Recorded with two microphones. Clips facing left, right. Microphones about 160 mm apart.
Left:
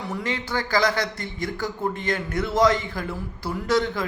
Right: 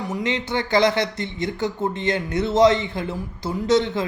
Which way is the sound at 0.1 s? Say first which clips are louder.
Right 3 dB; 20° right (ahead or behind).